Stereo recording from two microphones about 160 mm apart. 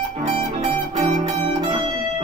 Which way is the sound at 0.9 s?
45° right (ahead or behind).